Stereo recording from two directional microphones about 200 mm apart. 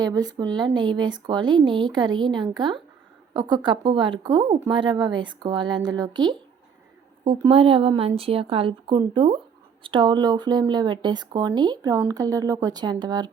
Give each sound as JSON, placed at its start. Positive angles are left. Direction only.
{"t": 0.0, "sound": "speech", "side_deg": -20}
{"t": 7.4, "sound": "speech", "side_deg": -30}